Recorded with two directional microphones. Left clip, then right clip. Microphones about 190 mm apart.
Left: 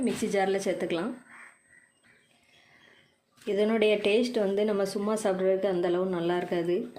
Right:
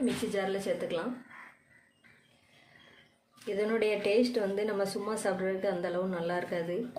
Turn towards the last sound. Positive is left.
turn(degrees=40)  # may be behind; listen again after turning